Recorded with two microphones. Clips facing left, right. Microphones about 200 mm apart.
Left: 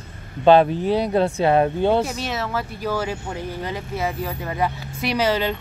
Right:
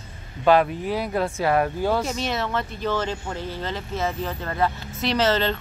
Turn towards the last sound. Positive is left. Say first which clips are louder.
# even
turn(degrees=10)  # may be behind; listen again after turning